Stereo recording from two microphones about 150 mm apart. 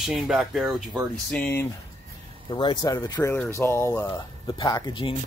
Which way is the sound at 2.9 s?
20° left (ahead or behind).